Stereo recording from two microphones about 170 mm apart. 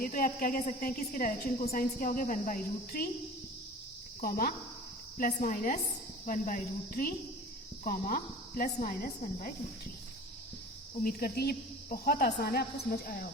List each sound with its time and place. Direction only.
0.0 s a woman's voice: 55° left (ahead or behind)
4.2 s a woman's voice: 55° left (ahead or behind)
11.0 s a woman's voice: 65° left (ahead or behind)